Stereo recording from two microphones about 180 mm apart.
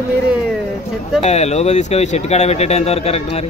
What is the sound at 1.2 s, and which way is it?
Speech, 40° left (ahead or behind).